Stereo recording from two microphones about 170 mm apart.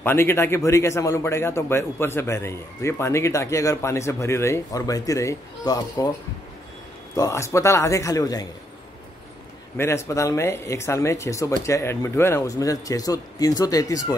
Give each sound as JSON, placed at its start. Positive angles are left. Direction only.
{"t": 0.0, "sound": "a man's voice", "side_deg": 15}
{"t": 7.2, "sound": "a man's voice", "side_deg": 20}
{"t": 9.8, "sound": "a man's voice", "side_deg": 15}